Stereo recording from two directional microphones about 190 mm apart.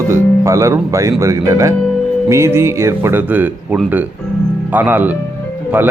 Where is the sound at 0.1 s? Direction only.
15° right (ahead or behind).